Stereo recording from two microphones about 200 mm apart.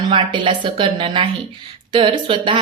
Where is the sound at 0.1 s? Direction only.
25° right (ahead or behind).